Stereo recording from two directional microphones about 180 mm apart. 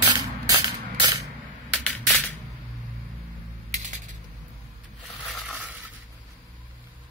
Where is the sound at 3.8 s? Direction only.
40° right (ahead or behind).